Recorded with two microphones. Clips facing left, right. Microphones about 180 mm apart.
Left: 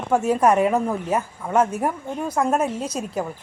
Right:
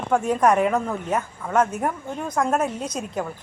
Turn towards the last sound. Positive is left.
turn(degrees=10)  # may be behind; listen again after turning